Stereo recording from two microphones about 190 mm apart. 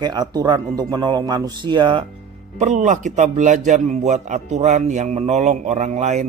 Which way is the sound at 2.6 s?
40° right (ahead or behind).